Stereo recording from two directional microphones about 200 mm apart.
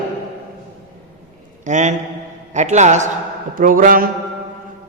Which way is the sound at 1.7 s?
35° right (ahead or behind).